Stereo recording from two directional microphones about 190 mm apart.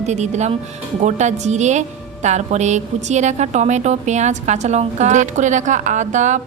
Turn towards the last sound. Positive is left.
turn(degrees=-40)  # may be behind; listen again after turning